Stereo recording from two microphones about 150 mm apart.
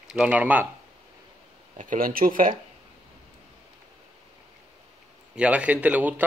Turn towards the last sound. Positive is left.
turn(degrees=-10)  # may be behind; listen again after turning